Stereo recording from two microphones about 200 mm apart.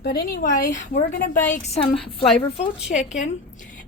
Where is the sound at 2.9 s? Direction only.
35° left (ahead or behind).